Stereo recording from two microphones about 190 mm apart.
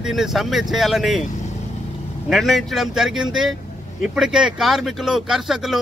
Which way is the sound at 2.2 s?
Centre (ahead or behind).